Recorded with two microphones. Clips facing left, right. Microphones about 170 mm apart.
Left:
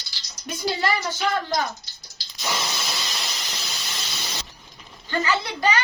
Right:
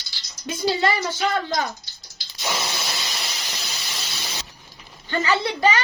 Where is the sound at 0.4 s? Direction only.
25° right (ahead or behind).